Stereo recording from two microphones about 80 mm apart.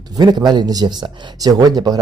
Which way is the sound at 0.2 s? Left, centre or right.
Right.